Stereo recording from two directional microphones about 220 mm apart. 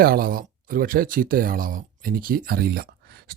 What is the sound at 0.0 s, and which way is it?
Speech, 40° right (ahead or behind).